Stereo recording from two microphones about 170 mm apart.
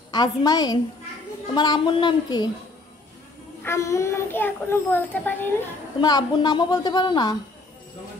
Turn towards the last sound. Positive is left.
turn(degrees=25)  # may be behind; listen again after turning